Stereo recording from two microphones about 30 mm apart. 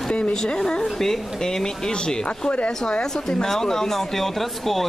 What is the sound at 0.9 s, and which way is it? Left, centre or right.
Speech, centre.